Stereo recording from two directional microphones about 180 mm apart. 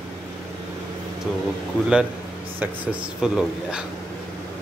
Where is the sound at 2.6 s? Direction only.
5° right (ahead or behind).